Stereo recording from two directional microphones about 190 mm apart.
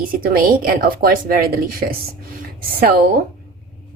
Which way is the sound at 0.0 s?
45° right (ahead or behind).